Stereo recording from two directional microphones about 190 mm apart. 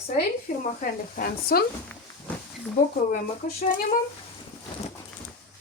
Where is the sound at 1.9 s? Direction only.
5° left (ahead or behind).